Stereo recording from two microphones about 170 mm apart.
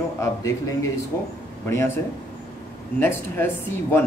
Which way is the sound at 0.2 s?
15° left (ahead or behind).